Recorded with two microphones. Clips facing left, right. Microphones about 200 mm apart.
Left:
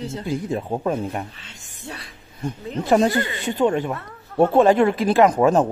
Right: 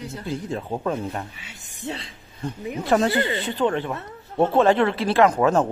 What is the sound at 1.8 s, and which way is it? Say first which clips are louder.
Speech: right 5 dB; 25° right (ahead or behind).